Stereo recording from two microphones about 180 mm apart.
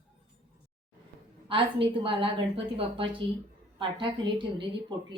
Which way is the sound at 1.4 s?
30° right (ahead or behind).